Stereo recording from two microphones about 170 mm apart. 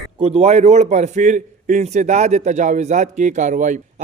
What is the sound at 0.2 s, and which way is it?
A man's voice, 40° right (ahead or behind).